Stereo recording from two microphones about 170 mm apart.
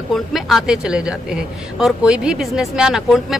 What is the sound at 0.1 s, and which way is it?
Speech, centre (ahead or behind).